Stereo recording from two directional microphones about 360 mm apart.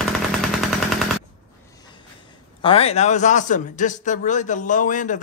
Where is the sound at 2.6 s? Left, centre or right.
Centre.